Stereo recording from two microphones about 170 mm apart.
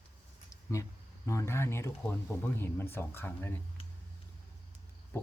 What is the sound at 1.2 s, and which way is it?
Speech, 15° left (ahead or behind).